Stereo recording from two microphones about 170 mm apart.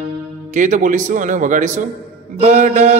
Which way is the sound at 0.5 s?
50° right (ahead or behind).